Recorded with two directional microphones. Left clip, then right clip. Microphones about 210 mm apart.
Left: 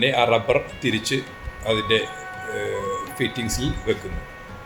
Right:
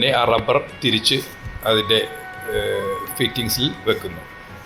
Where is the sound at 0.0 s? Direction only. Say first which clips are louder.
Right 2 dB; 10° right (ahead or behind).